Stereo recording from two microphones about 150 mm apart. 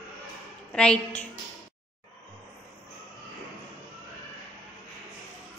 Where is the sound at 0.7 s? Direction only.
5° left (ahead or behind).